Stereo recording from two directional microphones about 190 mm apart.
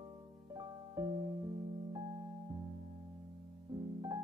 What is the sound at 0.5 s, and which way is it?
Music, 20° right (ahead or behind).